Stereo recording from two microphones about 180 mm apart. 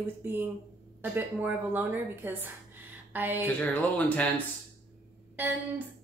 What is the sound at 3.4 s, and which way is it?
Speech, 10° left (ahead or behind).